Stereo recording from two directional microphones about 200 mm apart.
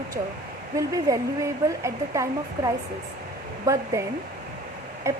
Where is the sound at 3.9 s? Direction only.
15° right (ahead or behind).